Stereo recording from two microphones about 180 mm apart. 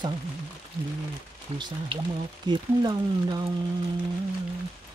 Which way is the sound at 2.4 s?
25° right (ahead or behind).